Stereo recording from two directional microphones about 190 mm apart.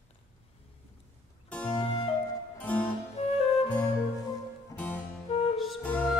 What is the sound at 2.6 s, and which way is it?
Music, 5° left (ahead or behind).